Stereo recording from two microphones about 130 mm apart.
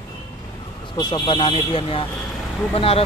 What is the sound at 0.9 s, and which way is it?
Speech, 35° left (ahead or behind).